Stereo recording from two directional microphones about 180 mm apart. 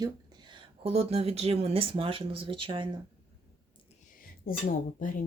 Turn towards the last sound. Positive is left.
turn(degrees=50)  # may be behind; listen again after turning